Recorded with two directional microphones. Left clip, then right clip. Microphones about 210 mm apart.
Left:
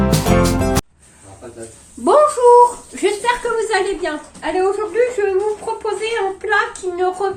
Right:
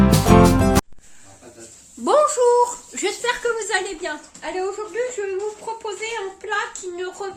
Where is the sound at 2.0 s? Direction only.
35° right (ahead or behind).